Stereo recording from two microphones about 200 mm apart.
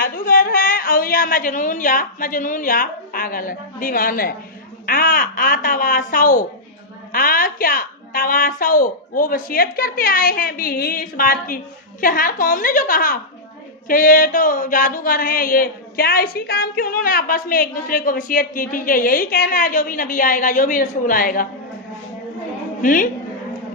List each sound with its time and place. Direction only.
0.0 s a woman's voice: 45° left (ahead or behind)
22.8 s a woman's voice: 40° left (ahead or behind)